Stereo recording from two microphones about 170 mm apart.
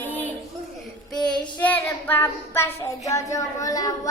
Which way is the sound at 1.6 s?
10° left (ahead or behind).